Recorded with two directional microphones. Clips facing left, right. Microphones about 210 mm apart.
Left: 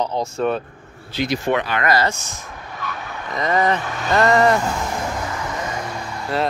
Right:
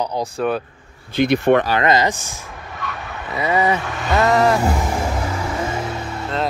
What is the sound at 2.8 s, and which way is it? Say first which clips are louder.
Speech: even; 10° right (ahead or behind).